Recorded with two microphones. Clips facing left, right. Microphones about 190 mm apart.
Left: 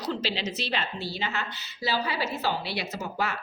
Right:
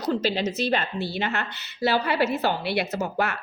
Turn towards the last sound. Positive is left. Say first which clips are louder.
# right 5 dB
turn(degrees=-60)  # may be behind; listen again after turning